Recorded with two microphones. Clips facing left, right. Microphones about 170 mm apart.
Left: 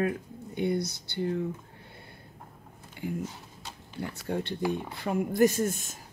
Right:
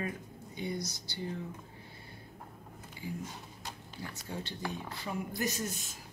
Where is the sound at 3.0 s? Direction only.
60° left (ahead or behind).